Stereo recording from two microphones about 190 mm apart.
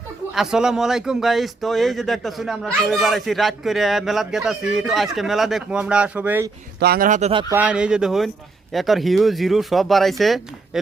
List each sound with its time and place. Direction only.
0.3 s a man's voice: 5° right (ahead or behind)
6.7 s speech: 55° right (ahead or behind); by 7.4 s 35° right (ahead or behind)
7.5 s a man's voice: 5° right (ahead or behind)